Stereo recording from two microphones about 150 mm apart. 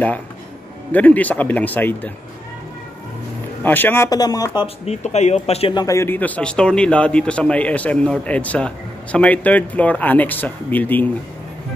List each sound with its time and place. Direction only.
0.9 s a man's voice: 10° left (ahead or behind)
3.6 s speech: 15° left (ahead or behind)
4.8 s speech: 50° left (ahead or behind)
5.8 s a man's voice: 20° left (ahead or behind)